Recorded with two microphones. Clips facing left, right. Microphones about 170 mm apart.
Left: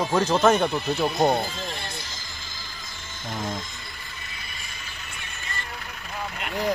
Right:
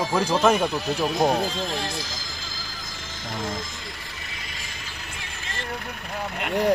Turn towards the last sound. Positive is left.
turn(degrees=-60)  # may be behind; listen again after turning